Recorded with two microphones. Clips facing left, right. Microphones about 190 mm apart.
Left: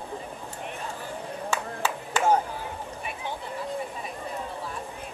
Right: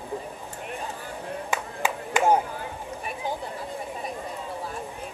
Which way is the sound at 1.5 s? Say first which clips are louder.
Even; 15° right (ahead or behind).